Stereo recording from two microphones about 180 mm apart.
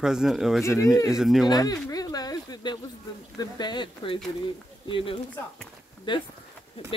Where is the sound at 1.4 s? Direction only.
20° left (ahead or behind).